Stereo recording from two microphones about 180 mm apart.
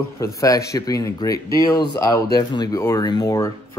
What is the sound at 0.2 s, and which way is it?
Speech, 15° left (ahead or behind).